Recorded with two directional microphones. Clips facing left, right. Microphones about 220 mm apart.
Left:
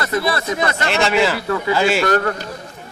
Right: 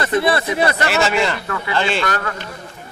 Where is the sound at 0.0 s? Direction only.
25° right (ahead or behind).